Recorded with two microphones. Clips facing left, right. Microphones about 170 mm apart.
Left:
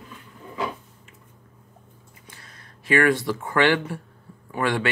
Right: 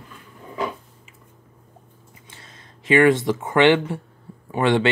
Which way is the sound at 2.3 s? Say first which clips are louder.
Right 3 dB; 20° right (ahead or behind).